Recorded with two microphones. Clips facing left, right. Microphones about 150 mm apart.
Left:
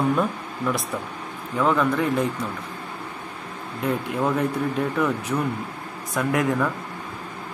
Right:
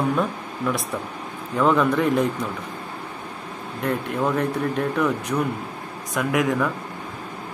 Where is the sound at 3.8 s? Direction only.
5° left (ahead or behind).